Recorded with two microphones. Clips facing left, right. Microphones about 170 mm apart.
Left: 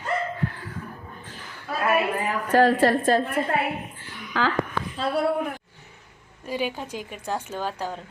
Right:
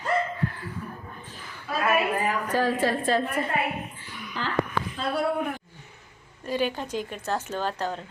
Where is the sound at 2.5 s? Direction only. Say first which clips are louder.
Left 8 dB; 70° left (ahead or behind).